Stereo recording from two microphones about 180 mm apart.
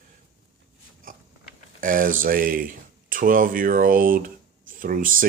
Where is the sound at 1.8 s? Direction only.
50° right (ahead or behind).